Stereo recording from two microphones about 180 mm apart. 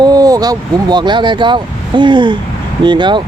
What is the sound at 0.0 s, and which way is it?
Speech, 20° right (ahead or behind).